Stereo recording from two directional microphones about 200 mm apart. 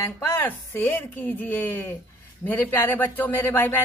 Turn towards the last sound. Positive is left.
turn(degrees=10)  # may be behind; listen again after turning